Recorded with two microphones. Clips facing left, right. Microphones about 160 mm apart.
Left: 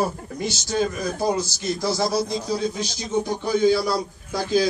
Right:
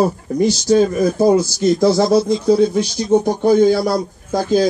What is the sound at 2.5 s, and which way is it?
A man's voice, 60° right (ahead or behind).